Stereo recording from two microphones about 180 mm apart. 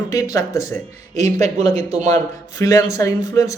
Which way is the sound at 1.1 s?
40° right (ahead or behind).